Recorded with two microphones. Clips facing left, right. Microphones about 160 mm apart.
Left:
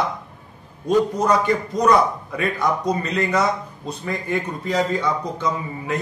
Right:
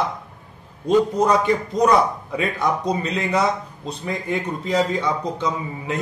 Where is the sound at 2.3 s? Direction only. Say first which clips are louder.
Even; 25° right (ahead or behind).